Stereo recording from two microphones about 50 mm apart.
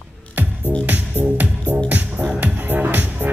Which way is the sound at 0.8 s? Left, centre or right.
Right.